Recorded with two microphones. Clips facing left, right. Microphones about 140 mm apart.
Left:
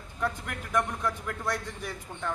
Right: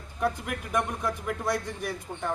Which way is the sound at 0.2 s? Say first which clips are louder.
Right 4 dB; 15° right (ahead or behind).